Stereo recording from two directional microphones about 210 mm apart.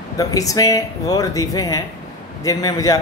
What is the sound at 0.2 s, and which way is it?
A man's voice, 15° left (ahead or behind).